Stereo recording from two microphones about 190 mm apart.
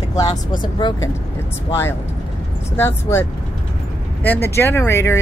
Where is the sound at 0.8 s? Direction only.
25° left (ahead or behind).